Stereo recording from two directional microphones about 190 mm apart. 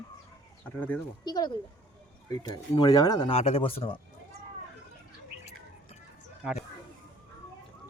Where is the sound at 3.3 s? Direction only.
30° left (ahead or behind).